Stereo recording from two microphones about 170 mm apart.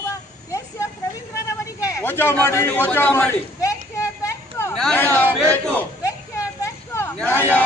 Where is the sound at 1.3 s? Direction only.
20° left (ahead or behind).